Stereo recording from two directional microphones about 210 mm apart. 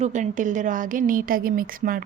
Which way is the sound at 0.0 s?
35° right (ahead or behind).